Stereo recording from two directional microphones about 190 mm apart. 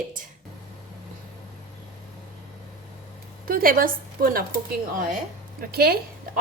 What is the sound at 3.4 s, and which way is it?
A woman's voice, 50° right (ahead or behind).